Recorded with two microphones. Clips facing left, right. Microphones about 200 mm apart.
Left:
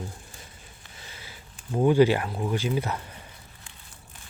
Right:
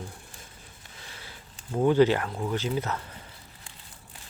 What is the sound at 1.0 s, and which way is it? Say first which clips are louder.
Speech: even; 5° left (ahead or behind).